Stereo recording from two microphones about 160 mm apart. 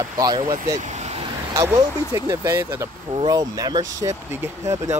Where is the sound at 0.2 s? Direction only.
20° right (ahead or behind).